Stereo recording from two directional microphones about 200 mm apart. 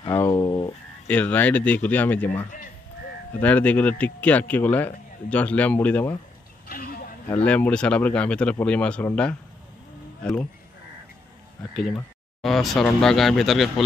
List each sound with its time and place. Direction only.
0.3 s sheep: 20° left (ahead or behind)
1.0 s speech: 10° left (ahead or behind)
6.7 s a sound: 45° left (ahead or behind)
7.4 s speech: 5° left (ahead or behind)
11.7 s speech: centre (ahead or behind)